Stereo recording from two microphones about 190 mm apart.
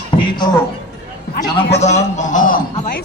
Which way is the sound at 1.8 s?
40° left (ahead or behind).